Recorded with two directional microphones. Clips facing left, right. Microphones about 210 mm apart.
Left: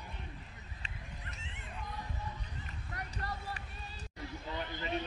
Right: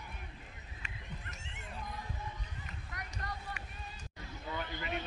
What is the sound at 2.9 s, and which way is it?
Music, 30° left (ahead or behind).